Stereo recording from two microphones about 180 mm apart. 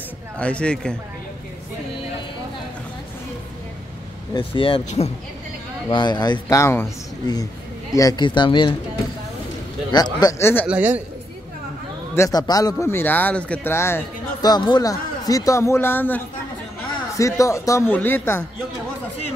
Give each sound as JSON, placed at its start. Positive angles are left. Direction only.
{"t": 0.4, "sound": "speech", "side_deg": 5}
{"t": 4.3, "sound": "speech", "side_deg": 30}
{"t": 9.8, "sound": "speech", "side_deg": 20}
{"t": 10.7, "sound": "a man's voice", "side_deg": -10}
{"t": 12.2, "sound": "speech", "side_deg": 20}
{"t": 17.2, "sound": "speech", "side_deg": 15}